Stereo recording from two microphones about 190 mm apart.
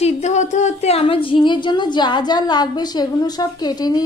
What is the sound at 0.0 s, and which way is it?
A woman's voice, 35° left (ahead or behind).